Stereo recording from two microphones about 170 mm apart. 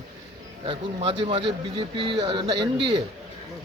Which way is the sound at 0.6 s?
35° right (ahead or behind).